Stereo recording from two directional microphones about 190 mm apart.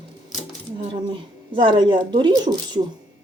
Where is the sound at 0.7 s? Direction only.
25° right (ahead or behind).